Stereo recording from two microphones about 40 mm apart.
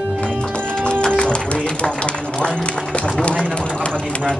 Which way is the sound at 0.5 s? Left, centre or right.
Left.